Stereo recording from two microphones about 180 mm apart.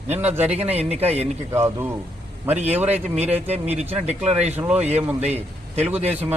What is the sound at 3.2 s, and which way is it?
Speech, 35° right (ahead or behind).